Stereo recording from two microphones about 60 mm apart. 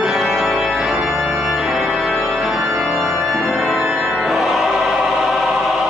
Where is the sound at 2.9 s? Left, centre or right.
Centre.